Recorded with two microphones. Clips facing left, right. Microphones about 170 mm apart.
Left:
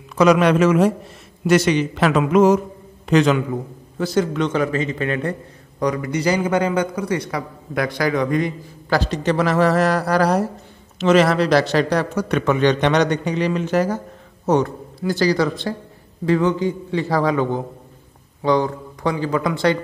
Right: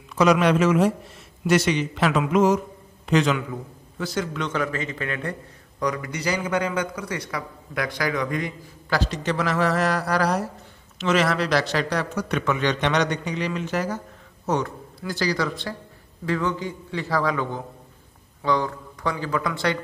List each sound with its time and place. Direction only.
0.2 s speech: 55° left (ahead or behind)
1.8 s a sound: 55° left (ahead or behind)
3.1 s speech: 55° left (ahead or behind)
4.0 s a man's voice: 30° left (ahead or behind)
12.3 s a sound: 50° left (ahead or behind)
12.5 s a man's voice: 35° left (ahead or behind)
13.1 s speech: 50° left (ahead or behind)
14.5 s a man's voice: 30° left (ahead or behind)